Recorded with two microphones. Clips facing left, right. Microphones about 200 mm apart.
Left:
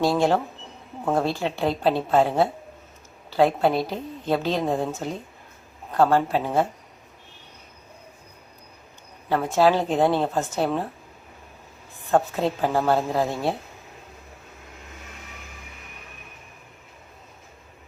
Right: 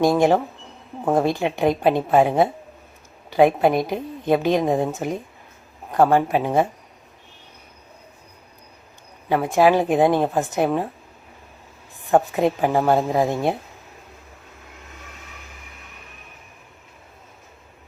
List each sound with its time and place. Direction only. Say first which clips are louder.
0.0 s a woman's voice: right 4 dB; 15° right (ahead or behind)
9.3 s a woman's voice: right 3 dB; 15° right (ahead or behind)
12.0 s a woman's voice: right 4 dB; 15° right (ahead or behind)